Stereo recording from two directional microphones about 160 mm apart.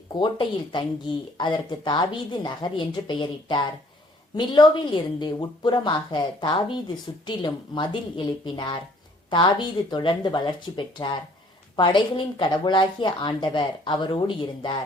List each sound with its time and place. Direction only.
0.2 s a woman's voice: 30° left (ahead or behind)